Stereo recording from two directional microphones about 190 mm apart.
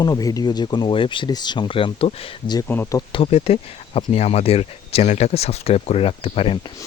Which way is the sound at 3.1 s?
30° left (ahead or behind).